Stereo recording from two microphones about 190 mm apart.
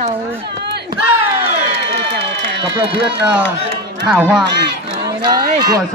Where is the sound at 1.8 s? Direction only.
65° right (ahead or behind).